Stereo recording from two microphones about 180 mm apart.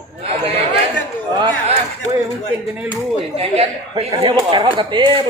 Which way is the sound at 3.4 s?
35° right (ahead or behind).